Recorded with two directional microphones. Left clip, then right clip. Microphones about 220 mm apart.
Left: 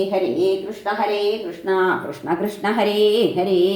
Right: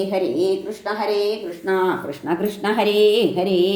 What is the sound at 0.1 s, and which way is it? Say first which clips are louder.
Speech: left 1 dB; 35° right (ahead or behind).